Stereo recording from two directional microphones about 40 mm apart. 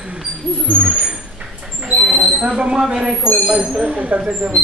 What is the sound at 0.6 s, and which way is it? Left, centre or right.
Speech, right.